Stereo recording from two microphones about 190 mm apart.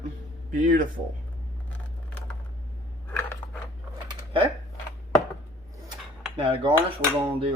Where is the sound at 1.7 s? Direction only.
5° left (ahead or behind).